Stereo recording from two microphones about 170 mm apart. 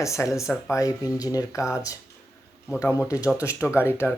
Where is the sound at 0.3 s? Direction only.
Centre (ahead or behind).